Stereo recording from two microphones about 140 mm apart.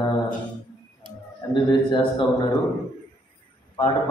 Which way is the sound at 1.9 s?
30° left (ahead or behind).